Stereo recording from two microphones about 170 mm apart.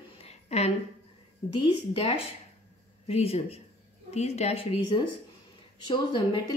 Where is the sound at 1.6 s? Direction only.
35° left (ahead or behind).